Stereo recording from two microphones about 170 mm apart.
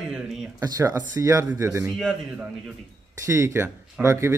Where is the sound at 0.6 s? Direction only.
20° right (ahead or behind).